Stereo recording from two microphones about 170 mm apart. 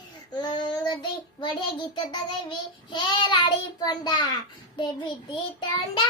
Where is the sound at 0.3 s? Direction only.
25° left (ahead or behind).